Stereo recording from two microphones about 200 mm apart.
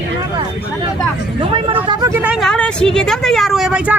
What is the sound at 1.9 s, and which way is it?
Speech, 20° right (ahead or behind).